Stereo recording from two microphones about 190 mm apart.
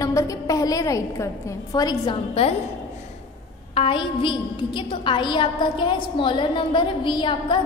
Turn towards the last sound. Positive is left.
turn(degrees=25)  # may be behind; listen again after turning